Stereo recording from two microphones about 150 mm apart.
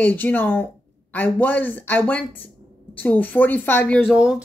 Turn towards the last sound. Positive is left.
turn(degrees=-5)  # may be behind; listen again after turning